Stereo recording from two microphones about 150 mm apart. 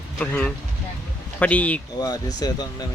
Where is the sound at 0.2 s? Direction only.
10° left (ahead or behind).